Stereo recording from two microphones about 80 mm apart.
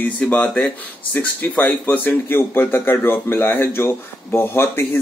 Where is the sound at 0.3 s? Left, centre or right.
Centre.